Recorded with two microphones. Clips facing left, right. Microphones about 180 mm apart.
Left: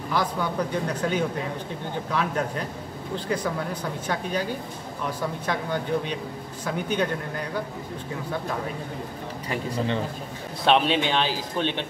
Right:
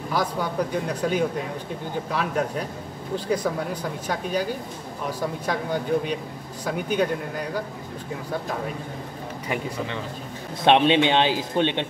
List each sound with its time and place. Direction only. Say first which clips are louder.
0.1 s speech: even; 10° right (ahead or behind)
4.1 s speech: right 2 dB; 10° right (ahead or behind)
5.5 s speech: right 2 dB; 10° right (ahead or behind)
10.6 s a man's voice: right 4 dB; 20° right (ahead or behind)